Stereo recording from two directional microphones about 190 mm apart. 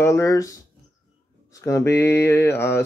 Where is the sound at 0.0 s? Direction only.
15° left (ahead or behind).